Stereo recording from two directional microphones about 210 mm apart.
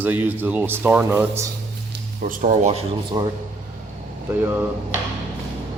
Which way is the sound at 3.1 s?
20° right (ahead or behind).